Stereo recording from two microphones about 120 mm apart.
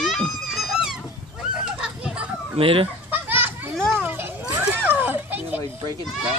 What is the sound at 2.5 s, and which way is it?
Chicken, 50° right (ahead or behind).